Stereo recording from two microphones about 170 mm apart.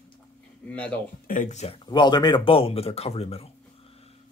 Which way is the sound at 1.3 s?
50° left (ahead or behind).